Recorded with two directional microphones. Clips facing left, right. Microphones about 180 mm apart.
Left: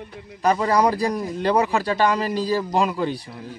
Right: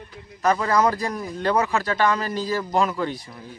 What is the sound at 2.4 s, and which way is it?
Speech, 35° left (ahead or behind).